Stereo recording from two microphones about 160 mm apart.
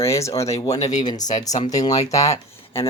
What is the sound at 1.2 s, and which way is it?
Speech, 50° left (ahead or behind).